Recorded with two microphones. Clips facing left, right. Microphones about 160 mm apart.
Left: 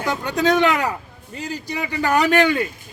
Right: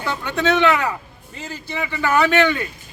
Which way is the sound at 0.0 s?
40° left (ahead or behind).